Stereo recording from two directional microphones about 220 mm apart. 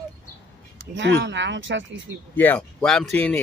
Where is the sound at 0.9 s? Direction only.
55° right (ahead or behind).